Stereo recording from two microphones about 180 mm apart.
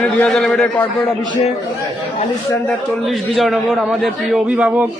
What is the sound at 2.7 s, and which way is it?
A man's voice, centre (ahead or behind).